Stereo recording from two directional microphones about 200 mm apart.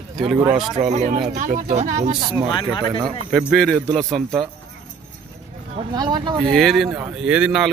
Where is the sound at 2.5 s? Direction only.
25° left (ahead or behind).